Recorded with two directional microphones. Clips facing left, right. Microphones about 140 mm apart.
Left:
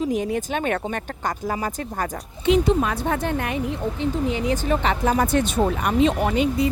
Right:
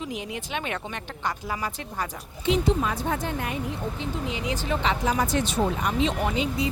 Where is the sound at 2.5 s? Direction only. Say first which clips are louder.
Left 5 dB; 60° left (ahead or behind).